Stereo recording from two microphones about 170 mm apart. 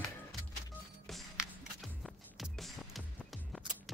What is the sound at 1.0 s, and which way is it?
Music, centre (ahead or behind).